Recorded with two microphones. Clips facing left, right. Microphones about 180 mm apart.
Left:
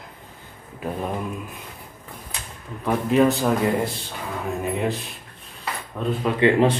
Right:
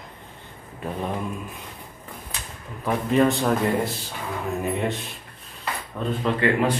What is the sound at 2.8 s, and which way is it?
A man's voice, centre (ahead or behind).